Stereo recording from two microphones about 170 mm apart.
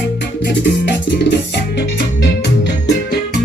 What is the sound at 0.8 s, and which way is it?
Music, 90° left.